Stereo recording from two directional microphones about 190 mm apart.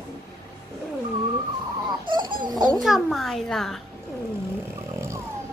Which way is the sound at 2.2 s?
25° right (ahead or behind).